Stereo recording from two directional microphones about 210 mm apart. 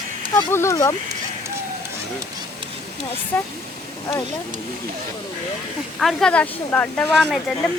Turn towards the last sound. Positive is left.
turn(degrees=0)  # may be behind; listen again after turning